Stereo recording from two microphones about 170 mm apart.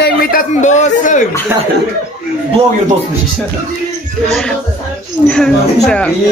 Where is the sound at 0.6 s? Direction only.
45° left (ahead or behind).